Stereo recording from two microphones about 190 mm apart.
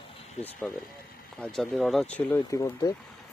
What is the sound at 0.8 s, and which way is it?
Speech, 50° left (ahead or behind).